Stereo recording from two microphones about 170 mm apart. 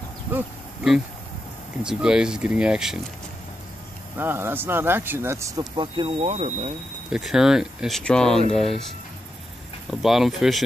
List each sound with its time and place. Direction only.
1.8 s speech: 5° right (ahead or behind)
4.2 s speech: 15° right (ahead or behind)
5.8 s speech: 30° right (ahead or behind)
7.1 s speech: 5° right (ahead or behind)
9.8 s speech: centre (ahead or behind)